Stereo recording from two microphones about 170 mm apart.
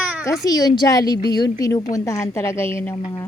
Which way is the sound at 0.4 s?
25° left (ahead or behind).